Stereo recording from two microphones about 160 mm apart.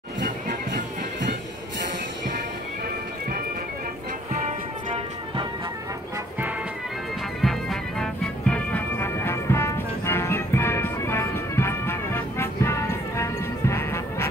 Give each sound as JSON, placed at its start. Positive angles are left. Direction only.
{"t": 0.2, "sound": "music", "side_deg": -75}
{"t": 4.3, "sound": "music", "side_deg": -50}
{"t": 7.4, "sound": "music", "side_deg": 0}